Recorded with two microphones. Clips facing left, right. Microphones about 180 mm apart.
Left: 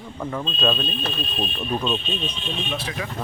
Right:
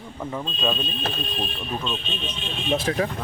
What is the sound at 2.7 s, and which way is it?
Speech, 40° right (ahead or behind).